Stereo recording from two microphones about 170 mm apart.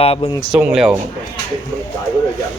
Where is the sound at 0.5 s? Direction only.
5° right (ahead or behind).